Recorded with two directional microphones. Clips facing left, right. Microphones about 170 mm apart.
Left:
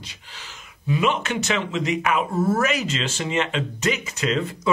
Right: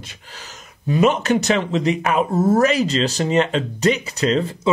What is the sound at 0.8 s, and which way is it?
Speech, 40° right (ahead or behind).